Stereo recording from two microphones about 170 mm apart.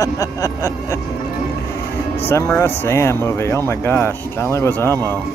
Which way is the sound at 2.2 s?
15° left (ahead or behind).